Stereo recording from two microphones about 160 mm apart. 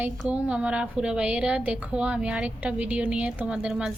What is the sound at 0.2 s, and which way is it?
A woman's voice, 10° right (ahead or behind).